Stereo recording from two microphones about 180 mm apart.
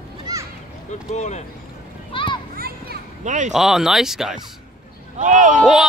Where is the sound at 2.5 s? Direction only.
60° right (ahead or behind).